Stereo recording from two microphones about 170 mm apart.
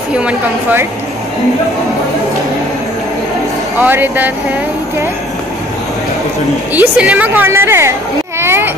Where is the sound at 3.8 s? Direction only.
10° right (ahead or behind).